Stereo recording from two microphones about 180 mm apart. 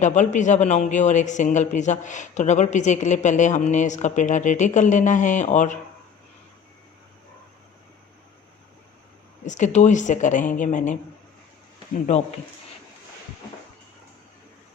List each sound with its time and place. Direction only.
0.0 s speech: 40° left (ahead or behind)
9.5 s speech: 40° left (ahead or behind)